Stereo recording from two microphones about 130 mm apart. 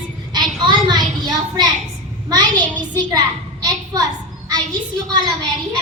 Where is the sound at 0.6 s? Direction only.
35° right (ahead or behind).